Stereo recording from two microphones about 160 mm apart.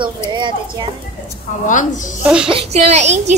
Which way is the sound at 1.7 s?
55° left (ahead or behind).